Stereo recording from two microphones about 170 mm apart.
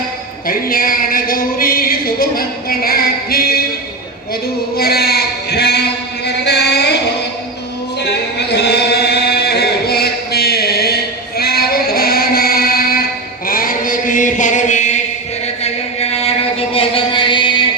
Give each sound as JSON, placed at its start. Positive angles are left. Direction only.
{"t": 0.4, "sound": "a sound", "side_deg": 55}
{"t": 4.8, "sound": "a sound", "side_deg": 70}
{"t": 6.2, "sound": "music", "side_deg": 80}
{"t": 8.0, "sound": "chant", "side_deg": 80}
{"t": 11.3, "sound": "female singing", "side_deg": 65}
{"t": 13.5, "sound": "chant", "side_deg": 55}